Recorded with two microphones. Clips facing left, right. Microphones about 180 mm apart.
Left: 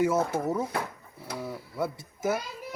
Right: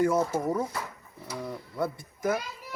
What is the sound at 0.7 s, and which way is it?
Speech, 60° left (ahead or behind).